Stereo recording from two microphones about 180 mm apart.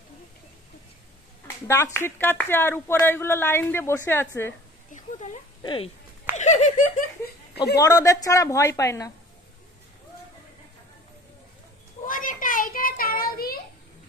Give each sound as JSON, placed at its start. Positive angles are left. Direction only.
{"t": 1.7, "sound": "speech", "side_deg": 15}
{"t": 4.9, "sound": "a sound", "side_deg": 45}
{"t": 5.6, "sound": "speech", "side_deg": 25}
{"t": 6.3, "sound": "giggle", "side_deg": 40}
{"t": 7.8, "sound": "speech", "side_deg": 20}
{"t": 12.1, "sound": "child singing", "side_deg": 50}